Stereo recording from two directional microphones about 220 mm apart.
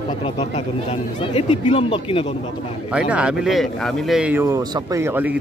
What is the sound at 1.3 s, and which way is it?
Speech, 25° left (ahead or behind).